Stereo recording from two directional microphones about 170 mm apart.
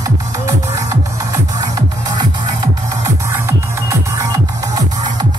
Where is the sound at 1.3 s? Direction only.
25° right (ahead or behind).